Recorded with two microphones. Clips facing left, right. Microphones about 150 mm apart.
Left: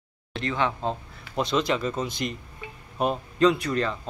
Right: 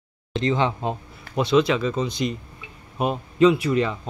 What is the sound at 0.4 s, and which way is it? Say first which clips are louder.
Speech: right 4 dB; 25° right (ahead or behind).